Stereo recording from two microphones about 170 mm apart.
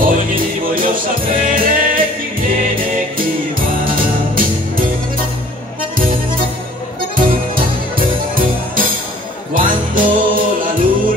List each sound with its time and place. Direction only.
0.0 s music: 55° right (ahead or behind)
5.9 s music: 55° right (ahead or behind)